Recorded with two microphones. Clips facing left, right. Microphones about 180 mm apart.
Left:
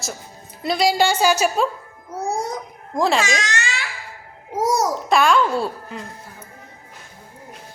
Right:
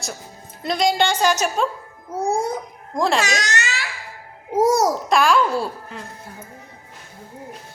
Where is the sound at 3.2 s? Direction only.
40° right (ahead or behind).